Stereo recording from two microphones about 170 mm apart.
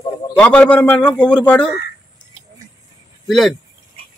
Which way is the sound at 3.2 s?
Centre (ahead or behind).